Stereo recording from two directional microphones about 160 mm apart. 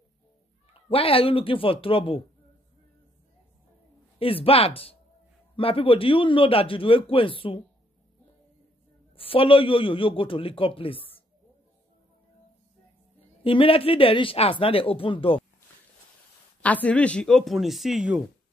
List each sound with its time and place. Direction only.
0.8 s a man's voice: 35° left (ahead or behind)
4.2 s a man's voice: 35° left (ahead or behind)
9.1 s a man's voice: 35° left (ahead or behind)
13.4 s a man's voice: 35° left (ahead or behind)
16.6 s speech: 10° left (ahead or behind)